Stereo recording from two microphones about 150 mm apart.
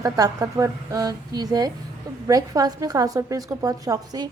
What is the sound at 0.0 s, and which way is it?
A woman's voice, 20° right (ahead or behind).